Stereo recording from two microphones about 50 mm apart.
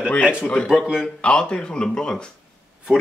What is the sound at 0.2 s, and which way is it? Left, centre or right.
Speech, centre.